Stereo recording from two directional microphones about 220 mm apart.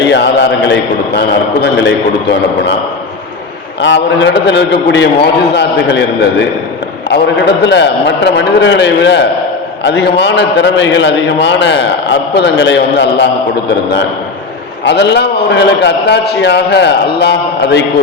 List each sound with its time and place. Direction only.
0.0 s a man's voice: 55° left (ahead or behind)
3.8 s a man's voice: 55° left (ahead or behind)
7.1 s a man's voice: 50° left (ahead or behind)
14.8 s a man's voice: 50° left (ahead or behind)